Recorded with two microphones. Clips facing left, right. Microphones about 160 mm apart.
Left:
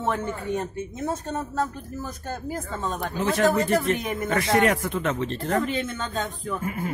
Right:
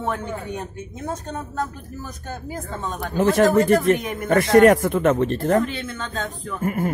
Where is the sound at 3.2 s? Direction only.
50° right (ahead or behind).